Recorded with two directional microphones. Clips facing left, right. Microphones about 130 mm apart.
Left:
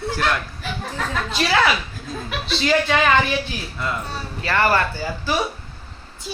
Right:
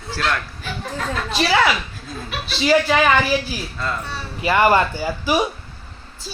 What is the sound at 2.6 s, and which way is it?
Speech, 5° right (ahead or behind).